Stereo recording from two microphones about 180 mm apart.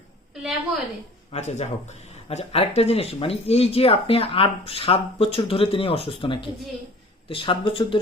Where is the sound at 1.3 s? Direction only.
40° left (ahead or behind).